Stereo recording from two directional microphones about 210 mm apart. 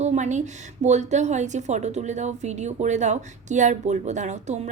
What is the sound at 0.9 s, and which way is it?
A woman's voice, 35° right (ahead or behind).